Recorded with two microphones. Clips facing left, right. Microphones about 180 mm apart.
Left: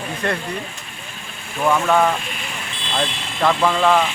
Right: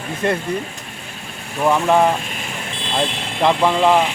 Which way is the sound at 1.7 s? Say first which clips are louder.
Right 2 dB; 20° right (ahead or behind).